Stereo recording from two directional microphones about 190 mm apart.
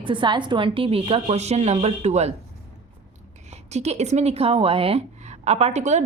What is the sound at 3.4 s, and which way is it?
Speech, 35° right (ahead or behind).